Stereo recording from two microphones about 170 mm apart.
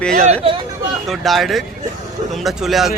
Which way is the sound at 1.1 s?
Centre (ahead or behind).